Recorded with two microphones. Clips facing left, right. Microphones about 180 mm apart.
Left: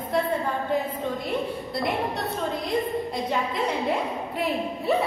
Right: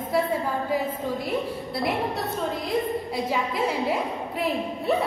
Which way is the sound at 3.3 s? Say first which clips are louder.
Right 1 dB; 5° right (ahead or behind).